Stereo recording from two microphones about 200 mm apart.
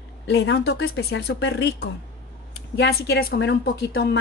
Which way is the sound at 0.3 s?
65° left (ahead or behind).